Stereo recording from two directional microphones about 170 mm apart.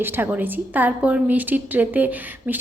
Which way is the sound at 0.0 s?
10° right (ahead or behind).